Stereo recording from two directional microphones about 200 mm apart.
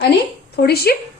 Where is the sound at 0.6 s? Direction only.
55° left (ahead or behind).